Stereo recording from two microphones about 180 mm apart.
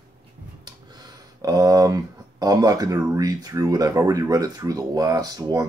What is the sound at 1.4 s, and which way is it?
Speech, 20° right (ahead or behind).